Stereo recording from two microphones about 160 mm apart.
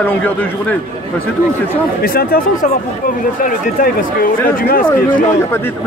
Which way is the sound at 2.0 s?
70° left (ahead or behind).